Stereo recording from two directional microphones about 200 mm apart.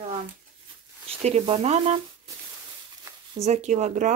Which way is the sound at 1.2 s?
30° right (ahead or behind).